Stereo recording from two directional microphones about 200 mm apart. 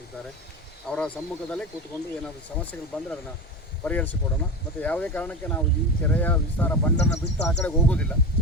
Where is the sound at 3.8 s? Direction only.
10° left (ahead or behind).